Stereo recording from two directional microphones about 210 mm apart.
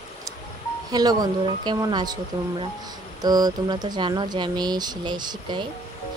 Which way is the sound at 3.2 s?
20° right (ahead or behind).